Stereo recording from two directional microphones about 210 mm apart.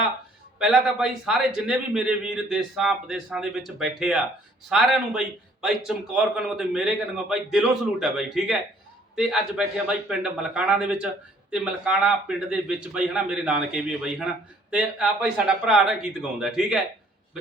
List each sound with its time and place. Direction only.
0.6 s a man's voice: centre (ahead or behind)